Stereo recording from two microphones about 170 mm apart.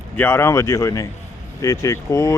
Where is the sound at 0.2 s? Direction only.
15° left (ahead or behind).